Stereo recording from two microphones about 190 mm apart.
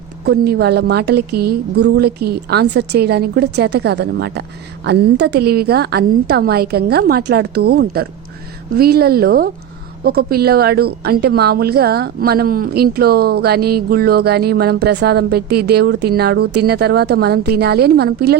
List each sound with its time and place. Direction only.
0.3 s a woman's voice: 55° right (ahead or behind)